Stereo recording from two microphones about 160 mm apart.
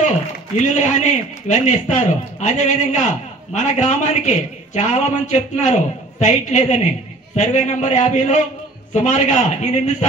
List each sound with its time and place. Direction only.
0.6 s a man's voice: 50° left (ahead or behind)